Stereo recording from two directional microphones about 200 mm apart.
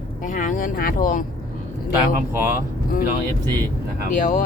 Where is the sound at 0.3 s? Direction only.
40° left (ahead or behind).